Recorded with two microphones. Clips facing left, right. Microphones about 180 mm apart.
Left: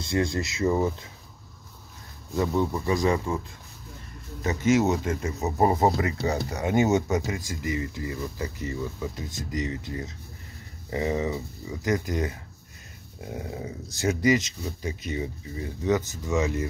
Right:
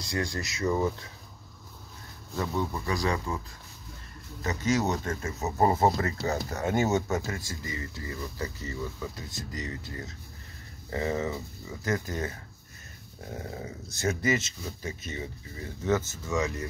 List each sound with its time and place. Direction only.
0.0 s speech: 25° left (ahead or behind)
2.3 s speech: 15° left (ahead or behind)
4.4 s speech: 20° left (ahead or behind)